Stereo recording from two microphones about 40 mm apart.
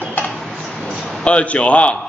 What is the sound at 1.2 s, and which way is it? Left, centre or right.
Speech, left.